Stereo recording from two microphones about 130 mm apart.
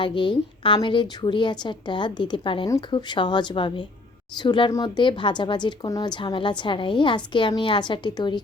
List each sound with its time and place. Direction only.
0.0 s a woman's voice: 40° left (ahead or behind)